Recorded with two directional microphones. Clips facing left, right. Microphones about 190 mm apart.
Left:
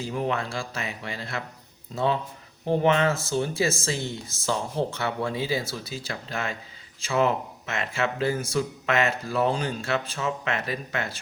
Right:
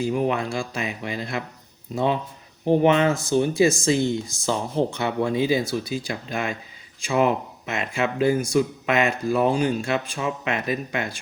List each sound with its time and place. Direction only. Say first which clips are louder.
0.0 s speech: right 5 dB; 15° right (ahead or behind)